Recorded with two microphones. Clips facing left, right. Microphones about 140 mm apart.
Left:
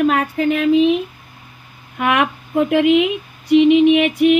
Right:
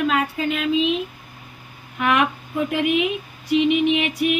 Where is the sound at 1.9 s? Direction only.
55° left (ahead or behind).